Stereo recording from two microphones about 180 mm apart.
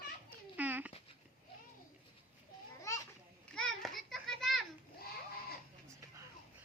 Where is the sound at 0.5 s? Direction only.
10° right (ahead or behind).